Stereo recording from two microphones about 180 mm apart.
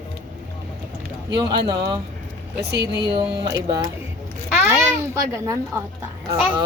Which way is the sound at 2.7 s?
70° right (ahead or behind).